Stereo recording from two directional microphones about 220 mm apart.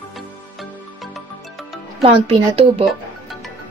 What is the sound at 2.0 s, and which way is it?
Speech, 25° right (ahead or behind).